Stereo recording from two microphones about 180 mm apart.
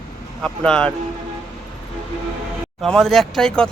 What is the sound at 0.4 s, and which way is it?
Speech, 5° left (ahead or behind).